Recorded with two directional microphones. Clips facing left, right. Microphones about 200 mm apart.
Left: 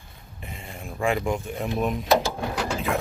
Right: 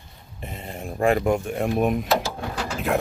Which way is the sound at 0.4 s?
45° right (ahead or behind).